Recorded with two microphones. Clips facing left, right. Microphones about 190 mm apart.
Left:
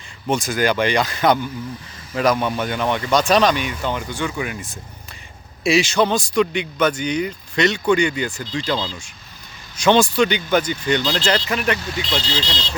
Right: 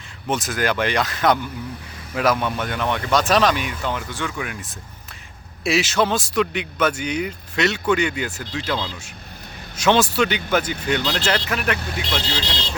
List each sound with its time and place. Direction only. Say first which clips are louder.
0.3 s a man's voice: left 3 dB; centre (ahead or behind)
12.3 s speech: left 2 dB; 55° right (ahead or behind)